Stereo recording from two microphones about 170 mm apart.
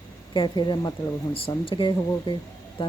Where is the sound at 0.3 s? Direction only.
25° left (ahead or behind).